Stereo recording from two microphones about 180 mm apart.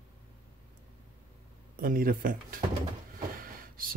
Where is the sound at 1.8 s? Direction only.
50° right (ahead or behind).